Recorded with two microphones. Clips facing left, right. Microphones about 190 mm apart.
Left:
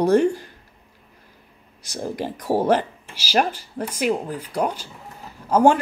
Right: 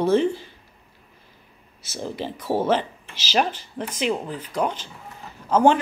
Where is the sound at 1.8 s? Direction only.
15° left (ahead or behind).